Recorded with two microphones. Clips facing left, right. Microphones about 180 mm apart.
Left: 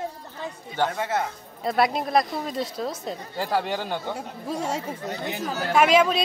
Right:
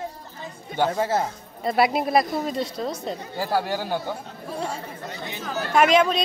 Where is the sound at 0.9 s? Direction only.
30° right (ahead or behind).